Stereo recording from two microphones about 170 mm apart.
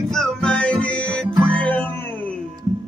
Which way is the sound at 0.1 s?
5° left (ahead or behind).